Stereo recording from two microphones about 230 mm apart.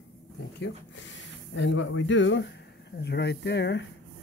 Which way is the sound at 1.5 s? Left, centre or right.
Left.